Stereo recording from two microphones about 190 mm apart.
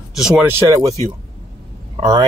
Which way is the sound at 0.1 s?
5° right (ahead or behind).